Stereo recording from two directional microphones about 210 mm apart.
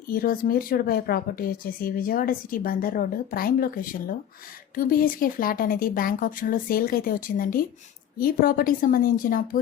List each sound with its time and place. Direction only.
0.1 s a woman's voice: 45° left (ahead or behind)